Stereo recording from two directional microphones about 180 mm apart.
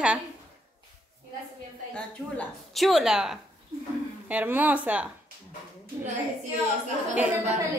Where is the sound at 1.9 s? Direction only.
5° left (ahead or behind).